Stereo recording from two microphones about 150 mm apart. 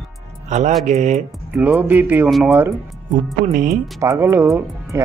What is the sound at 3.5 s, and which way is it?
Speech, 60° right (ahead or behind).